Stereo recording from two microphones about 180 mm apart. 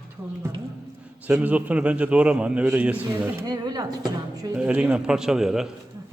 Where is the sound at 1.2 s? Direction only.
10° right (ahead or behind).